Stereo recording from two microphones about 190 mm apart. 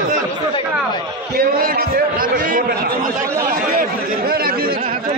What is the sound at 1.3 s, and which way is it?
Chatter, 50° right (ahead or behind).